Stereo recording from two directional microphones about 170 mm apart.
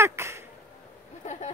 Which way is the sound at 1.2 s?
45° left (ahead or behind).